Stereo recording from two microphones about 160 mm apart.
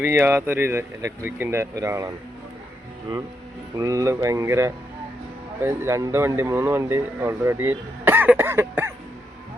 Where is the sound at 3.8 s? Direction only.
20° right (ahead or behind).